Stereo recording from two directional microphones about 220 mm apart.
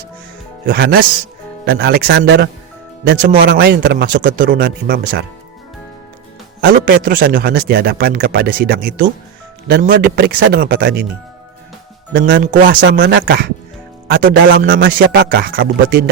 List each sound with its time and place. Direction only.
0.6 s speech: 45° right (ahead or behind)
6.7 s speech: 40° right (ahead or behind)
12.1 s speech: 45° right (ahead or behind)